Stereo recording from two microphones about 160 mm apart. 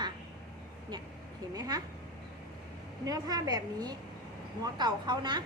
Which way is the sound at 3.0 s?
25° right (ahead or behind).